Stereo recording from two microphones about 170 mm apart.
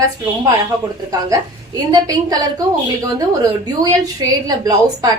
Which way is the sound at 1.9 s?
20° right (ahead or behind).